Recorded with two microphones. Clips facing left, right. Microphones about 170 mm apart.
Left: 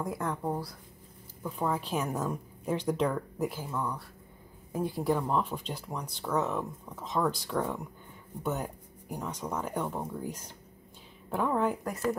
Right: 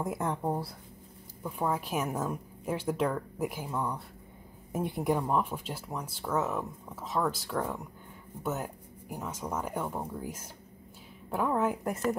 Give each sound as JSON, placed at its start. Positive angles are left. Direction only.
{"t": 0.0, "sound": "speech", "side_deg": -20}
{"t": 1.4, "sound": "a woman's voice", "side_deg": -10}
{"t": 11.8, "sound": "speech", "side_deg": -20}